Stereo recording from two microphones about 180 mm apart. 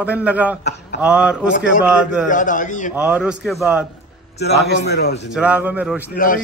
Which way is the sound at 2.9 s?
5° right (ahead or behind).